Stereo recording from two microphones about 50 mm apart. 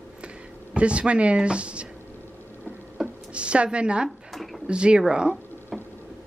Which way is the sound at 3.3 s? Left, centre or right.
Right.